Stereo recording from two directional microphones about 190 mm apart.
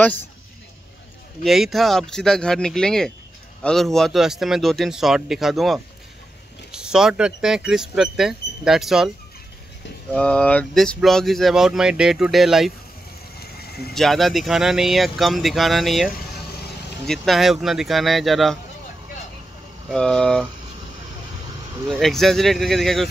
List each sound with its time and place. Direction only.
1.4 s speech: centre (ahead or behind)
10.1 s speech: 5° left (ahead or behind)
13.4 s a sound: 55° left (ahead or behind)
13.9 s speech: centre (ahead or behind)
19.9 s speech: 5° left (ahead or behind)
22.0 s speech: centre (ahead or behind)